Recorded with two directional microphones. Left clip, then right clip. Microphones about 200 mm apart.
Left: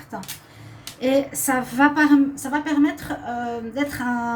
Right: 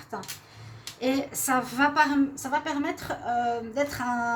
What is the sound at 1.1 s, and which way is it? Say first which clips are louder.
A woman's voice: left 7 dB; 50° right (ahead or behind).